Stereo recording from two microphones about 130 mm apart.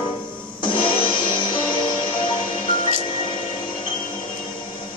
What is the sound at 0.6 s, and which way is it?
Music, 40° left (ahead or behind).